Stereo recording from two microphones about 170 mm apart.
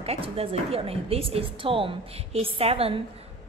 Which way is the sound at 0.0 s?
35° right (ahead or behind).